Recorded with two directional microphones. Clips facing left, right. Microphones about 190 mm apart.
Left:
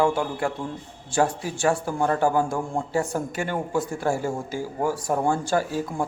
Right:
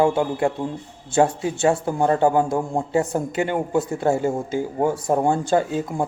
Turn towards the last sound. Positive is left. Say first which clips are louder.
# right 4 dB
turn(degrees=-20)  # may be behind; listen again after turning